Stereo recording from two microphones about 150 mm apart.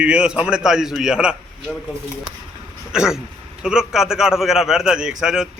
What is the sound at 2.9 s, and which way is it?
Speech, 5° right (ahead or behind).